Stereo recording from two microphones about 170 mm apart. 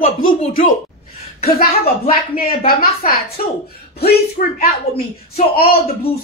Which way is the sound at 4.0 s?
60° left (ahead or behind).